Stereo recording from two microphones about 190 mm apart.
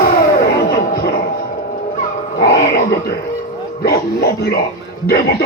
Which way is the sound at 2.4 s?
60° left (ahead or behind).